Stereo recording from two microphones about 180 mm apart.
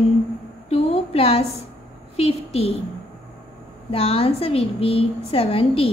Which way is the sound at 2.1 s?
35° left (ahead or behind).